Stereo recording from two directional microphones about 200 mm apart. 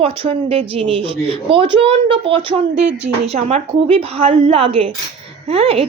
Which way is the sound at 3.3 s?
30° right (ahead or behind).